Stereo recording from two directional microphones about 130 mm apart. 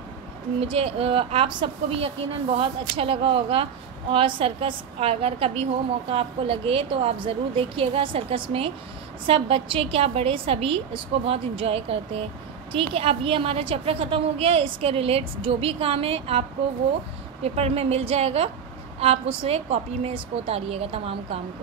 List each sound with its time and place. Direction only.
0.6 s a woman's voice: 50° right (ahead or behind)